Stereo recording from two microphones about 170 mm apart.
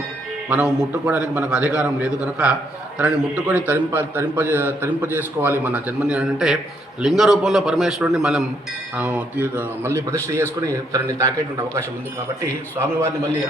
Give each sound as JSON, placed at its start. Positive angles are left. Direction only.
{"t": 0.5, "sound": "a man's voice", "side_deg": -10}